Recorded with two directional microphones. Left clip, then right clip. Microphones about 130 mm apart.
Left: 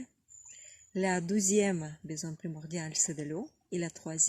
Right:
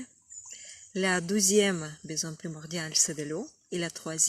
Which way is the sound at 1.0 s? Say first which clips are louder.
Right 4 dB; 30° left (ahead or behind).